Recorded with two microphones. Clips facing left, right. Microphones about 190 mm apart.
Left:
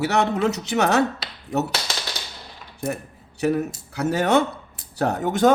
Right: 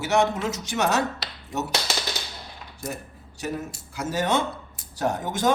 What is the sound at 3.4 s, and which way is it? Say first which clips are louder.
A man's voice: left 9 dB; 65° left (ahead or behind).